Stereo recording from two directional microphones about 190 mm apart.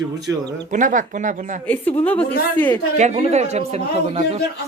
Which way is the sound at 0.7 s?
45° right (ahead or behind).